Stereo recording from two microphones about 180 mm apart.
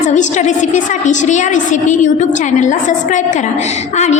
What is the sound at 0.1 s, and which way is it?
A woman's voice, 40° left (ahead or behind).